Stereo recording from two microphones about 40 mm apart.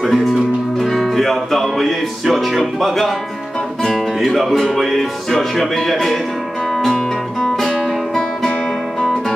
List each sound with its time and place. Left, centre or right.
0.0 s music: centre
0.7 s music: centre
1.1 s speech: centre
7.4 s music: centre